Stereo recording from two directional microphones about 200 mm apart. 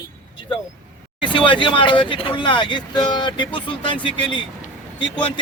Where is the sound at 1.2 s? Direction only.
25° left (ahead or behind).